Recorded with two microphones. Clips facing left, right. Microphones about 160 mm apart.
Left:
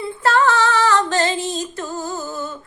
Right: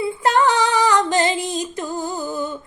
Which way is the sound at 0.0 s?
15° right (ahead or behind).